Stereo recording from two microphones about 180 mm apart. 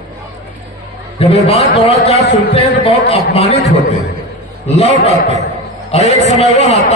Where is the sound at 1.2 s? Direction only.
35° left (ahead or behind).